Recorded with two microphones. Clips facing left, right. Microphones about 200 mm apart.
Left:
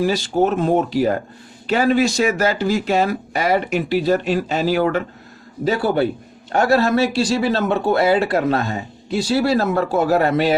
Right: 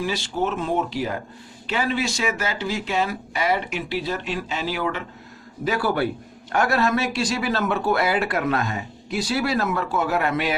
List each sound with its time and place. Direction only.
0.0 s speech: 40° left (ahead or behind)
5.6 s a man's voice: 25° left (ahead or behind)